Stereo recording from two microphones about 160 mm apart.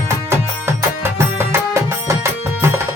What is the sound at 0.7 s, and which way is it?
Music, 15° right (ahead or behind).